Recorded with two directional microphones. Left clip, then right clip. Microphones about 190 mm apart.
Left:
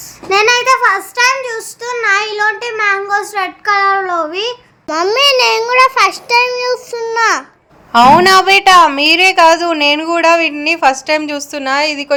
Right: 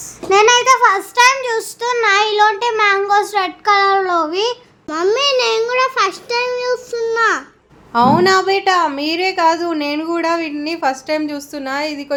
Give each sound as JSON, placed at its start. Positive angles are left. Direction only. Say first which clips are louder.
{"t": 0.3, "sound": "child singing", "louder": "even", "side_deg": 0}
{"t": 4.9, "sound": "a child's voice", "louder": "left 4 dB", "side_deg": 5}
{"t": 7.9, "sound": "a woman's voice", "louder": "left 6 dB", "side_deg": 25}